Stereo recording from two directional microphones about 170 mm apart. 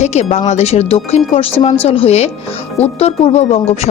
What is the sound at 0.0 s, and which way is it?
A woman's voice, 40° left (ahead or behind).